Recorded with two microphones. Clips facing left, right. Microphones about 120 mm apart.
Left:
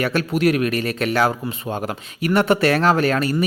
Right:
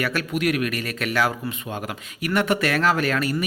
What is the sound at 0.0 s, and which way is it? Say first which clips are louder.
Speech: left 5 dB; 30° left (ahead or behind).